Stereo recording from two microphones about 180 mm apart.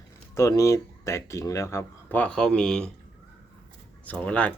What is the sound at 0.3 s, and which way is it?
Speech, 20° left (ahead or behind).